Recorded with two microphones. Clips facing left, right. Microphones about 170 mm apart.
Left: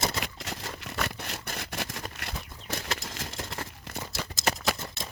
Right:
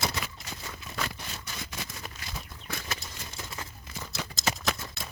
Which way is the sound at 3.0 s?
90° left.